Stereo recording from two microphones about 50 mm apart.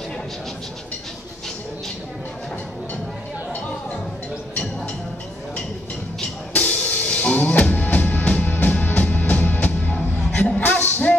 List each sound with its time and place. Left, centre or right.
6.5 s music: left
10.3 s music: centre
10.8 s music: left